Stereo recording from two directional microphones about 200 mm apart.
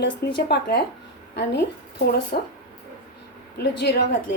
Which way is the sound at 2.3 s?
45° left (ahead or behind).